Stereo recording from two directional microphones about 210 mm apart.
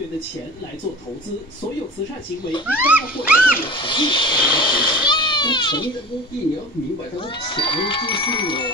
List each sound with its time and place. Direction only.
2.6 s speech: 5° right (ahead or behind)
3.6 s a child's voice: 25° left (ahead or behind)
7.2 s a child's voice: 25° left (ahead or behind)